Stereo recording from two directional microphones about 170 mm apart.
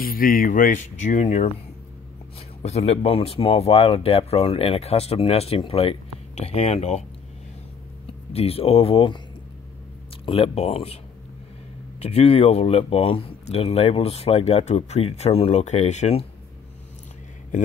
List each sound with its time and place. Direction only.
0.0 s speech: 55° left (ahead or behind); by 1.5 s 40° left (ahead or behind)
2.6 s speech: 40° left (ahead or behind)
8.1 s speech: 35° left (ahead or behind)
10.2 s speech: 35° left (ahead or behind)
12.0 s speech: 35° left (ahead or behind)